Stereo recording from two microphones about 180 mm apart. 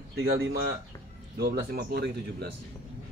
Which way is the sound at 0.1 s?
60° right (ahead or behind).